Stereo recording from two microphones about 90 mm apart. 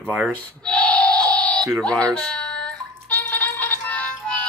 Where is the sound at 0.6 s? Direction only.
15° left (ahead or behind).